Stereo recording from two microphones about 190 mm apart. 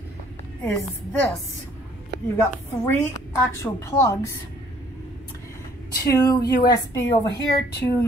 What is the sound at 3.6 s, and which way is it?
Speech, 15° left (ahead or behind).